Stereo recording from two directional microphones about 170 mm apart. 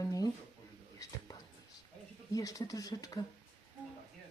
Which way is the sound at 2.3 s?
20° left (ahead or behind).